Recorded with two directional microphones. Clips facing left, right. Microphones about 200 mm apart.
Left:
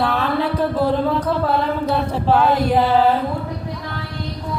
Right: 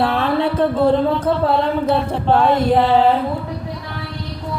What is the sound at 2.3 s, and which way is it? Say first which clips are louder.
Chant: right 2 dB; centre (ahead or behind).